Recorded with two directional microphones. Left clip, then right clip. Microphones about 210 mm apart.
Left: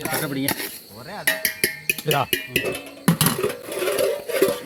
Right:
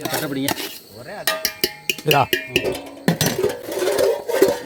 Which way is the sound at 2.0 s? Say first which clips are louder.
Right 6 dB; 30° right (ahead or behind).